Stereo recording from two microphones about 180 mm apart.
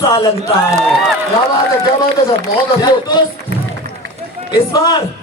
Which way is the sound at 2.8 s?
25° left (ahead or behind).